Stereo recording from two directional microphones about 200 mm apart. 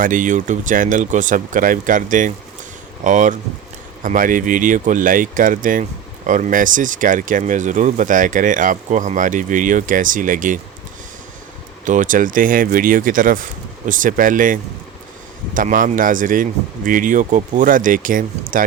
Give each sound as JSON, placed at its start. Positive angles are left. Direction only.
{"t": 0.0, "sound": "speech", "side_deg": -40}
{"t": 11.9, "sound": "speech", "side_deg": -40}